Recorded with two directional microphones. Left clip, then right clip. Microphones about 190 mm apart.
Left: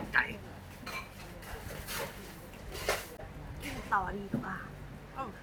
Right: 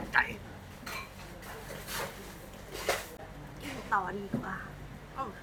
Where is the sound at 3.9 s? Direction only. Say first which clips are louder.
Right 1 dB; 5° left (ahead or behind).